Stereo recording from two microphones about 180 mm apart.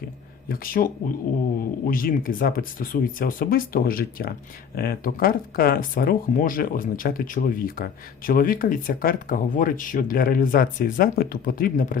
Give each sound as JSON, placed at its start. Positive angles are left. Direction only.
{"t": 0.4, "sound": "speech", "side_deg": 55}